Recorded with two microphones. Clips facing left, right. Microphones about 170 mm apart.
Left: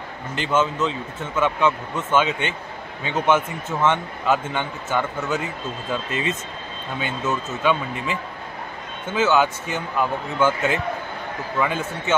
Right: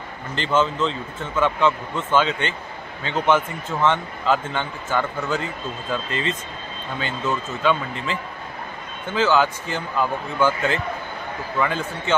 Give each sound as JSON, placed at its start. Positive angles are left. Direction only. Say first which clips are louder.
{"t": 0.4, "sound": "a man's voice", "louder": "right 1 dB", "side_deg": 10}